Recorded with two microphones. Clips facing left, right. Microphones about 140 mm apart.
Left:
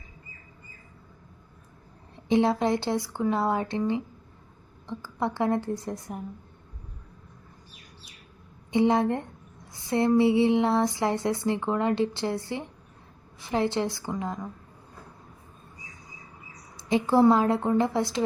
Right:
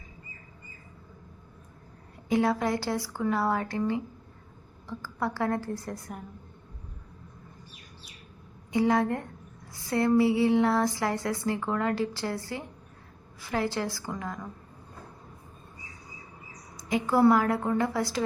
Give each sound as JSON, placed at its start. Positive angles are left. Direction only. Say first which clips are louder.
{"t": 2.3, "sound": "a woman's voice", "louder": "left 3 dB", "side_deg": 25}
{"t": 8.7, "sound": "a woman's voice", "louder": "left 2 dB", "side_deg": 25}
{"t": 16.9, "sound": "a woman's voice", "louder": "left 2 dB", "side_deg": 25}